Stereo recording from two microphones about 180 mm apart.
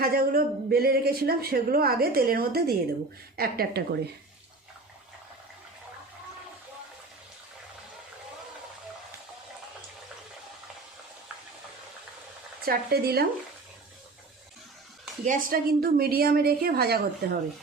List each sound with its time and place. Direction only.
0.0 s speech: 55° right (ahead or behind)
12.6 s speech: 60° right (ahead or behind)
15.2 s speech: 50° right (ahead or behind)